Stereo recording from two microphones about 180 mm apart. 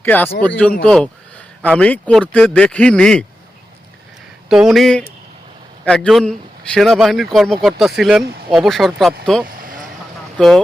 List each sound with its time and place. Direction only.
0.0 s speech: 10° left (ahead or behind)
4.4 s speech: centre (ahead or behind)
9.5 s a sound: 50° right (ahead or behind)
10.3 s speech: centre (ahead or behind)